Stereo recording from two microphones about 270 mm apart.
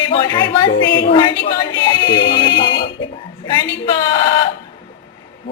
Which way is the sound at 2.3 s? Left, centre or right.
Centre.